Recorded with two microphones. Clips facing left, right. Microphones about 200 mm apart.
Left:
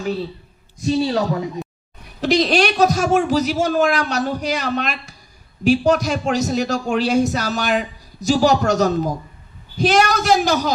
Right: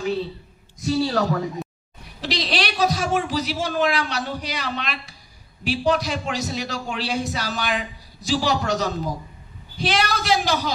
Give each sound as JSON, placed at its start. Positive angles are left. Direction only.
{"t": 0.8, "sound": "speech", "side_deg": 20}
{"t": 2.2, "sound": "a man's voice", "side_deg": 50}